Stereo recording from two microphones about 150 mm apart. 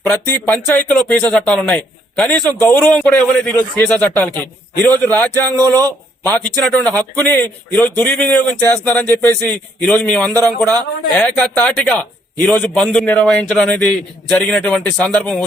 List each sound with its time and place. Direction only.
0.0 s speech: 15° left (ahead or behind)
5.5 s speech: 25° right (ahead or behind)
5.7 s a man's voice: 15° left (ahead or behind)